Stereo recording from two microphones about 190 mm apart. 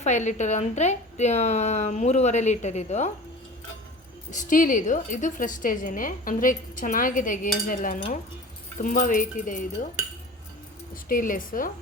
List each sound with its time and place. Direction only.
0.0 s a woman's voice: 40° left (ahead or behind)
4.3 s a woman's voice: 40° left (ahead or behind)
10.9 s a woman's voice: 45° left (ahead or behind)